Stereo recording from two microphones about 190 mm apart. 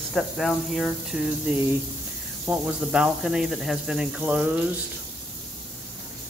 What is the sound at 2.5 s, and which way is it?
Speech, 5° right (ahead or behind).